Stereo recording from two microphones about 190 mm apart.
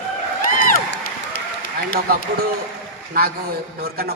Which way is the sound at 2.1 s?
55° right (ahead or behind).